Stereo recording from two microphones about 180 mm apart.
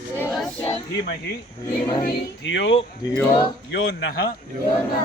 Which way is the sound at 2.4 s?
90° left.